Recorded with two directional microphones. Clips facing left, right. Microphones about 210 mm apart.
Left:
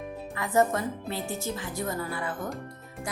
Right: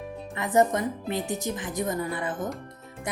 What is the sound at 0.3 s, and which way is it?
Speech, 20° right (ahead or behind).